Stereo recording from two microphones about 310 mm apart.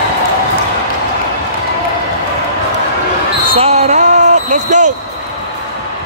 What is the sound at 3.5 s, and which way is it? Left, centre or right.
Basketball bounce, centre.